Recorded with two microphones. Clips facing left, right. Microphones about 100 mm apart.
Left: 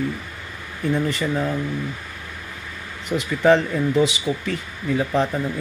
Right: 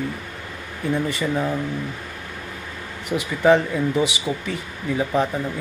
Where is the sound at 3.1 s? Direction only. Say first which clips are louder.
Even; 15° right (ahead or behind).